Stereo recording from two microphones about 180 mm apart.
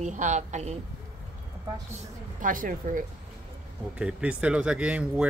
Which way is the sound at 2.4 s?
50° right (ahead or behind).